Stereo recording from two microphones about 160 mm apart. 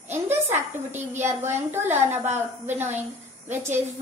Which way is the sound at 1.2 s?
15° right (ahead or behind).